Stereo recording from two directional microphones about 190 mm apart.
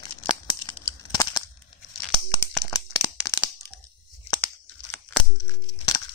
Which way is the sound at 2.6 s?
20° left (ahead or behind).